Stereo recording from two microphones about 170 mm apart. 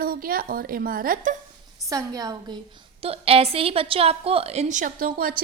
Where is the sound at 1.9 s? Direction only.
20° right (ahead or behind).